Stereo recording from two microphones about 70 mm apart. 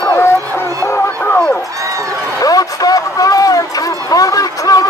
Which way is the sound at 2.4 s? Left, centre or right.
Left.